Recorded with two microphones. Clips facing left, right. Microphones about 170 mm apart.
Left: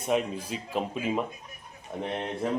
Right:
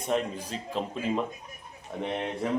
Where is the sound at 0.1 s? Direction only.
10° left (ahead or behind).